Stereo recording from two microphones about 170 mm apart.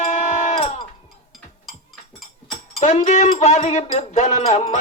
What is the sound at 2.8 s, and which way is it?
Music, 45° left (ahead or behind).